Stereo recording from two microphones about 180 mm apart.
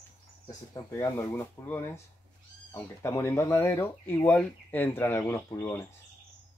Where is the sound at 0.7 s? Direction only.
20° left (ahead or behind).